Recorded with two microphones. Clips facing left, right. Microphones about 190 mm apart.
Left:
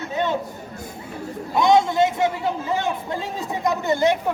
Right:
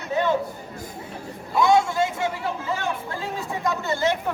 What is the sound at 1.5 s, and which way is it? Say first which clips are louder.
A man's voice: left 2 dB; 20° left (ahead or behind).